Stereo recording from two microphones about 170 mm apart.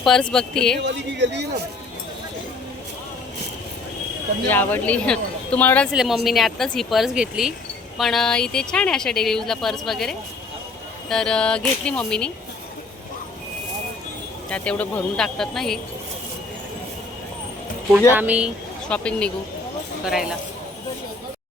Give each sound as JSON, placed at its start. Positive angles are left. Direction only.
{"t": 0.0, "sound": "speech", "side_deg": 5}
{"t": 0.8, "sound": "speech", "side_deg": -90}
{"t": 4.4, "sound": "speech", "side_deg": 10}
{"t": 5.9, "sound": "speech", "side_deg": -5}
{"t": 14.5, "sound": "speech", "side_deg": 5}
{"t": 18.1, "sound": "speech", "side_deg": -10}
{"t": 18.9, "sound": "speech", "side_deg": 5}